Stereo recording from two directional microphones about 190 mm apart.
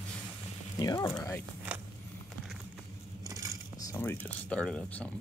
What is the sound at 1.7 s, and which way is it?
Walk, 5° right (ahead or behind).